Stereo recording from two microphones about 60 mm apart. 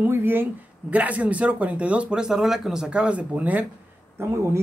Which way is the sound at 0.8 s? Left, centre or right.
Right.